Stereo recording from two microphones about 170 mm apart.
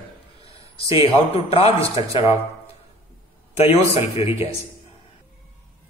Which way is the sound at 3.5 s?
35° left (ahead or behind).